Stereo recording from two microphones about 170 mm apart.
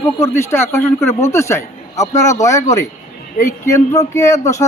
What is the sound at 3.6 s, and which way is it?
A man's voice, 15° left (ahead or behind).